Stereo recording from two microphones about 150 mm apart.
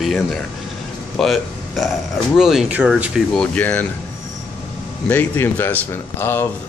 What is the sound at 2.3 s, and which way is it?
Speech, centre (ahead or behind).